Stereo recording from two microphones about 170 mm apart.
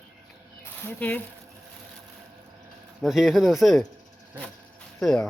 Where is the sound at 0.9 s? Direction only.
10° left (ahead or behind).